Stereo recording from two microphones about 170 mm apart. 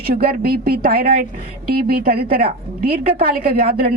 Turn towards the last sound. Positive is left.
turn(degrees=-65)  # may be behind; listen again after turning